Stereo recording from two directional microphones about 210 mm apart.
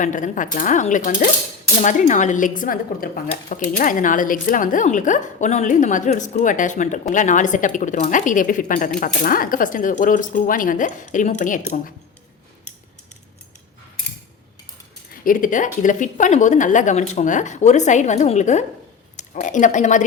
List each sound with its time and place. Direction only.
0.0 s speech: 35° left (ahead or behind)
15.1 s a woman's voice: 40° left (ahead or behind)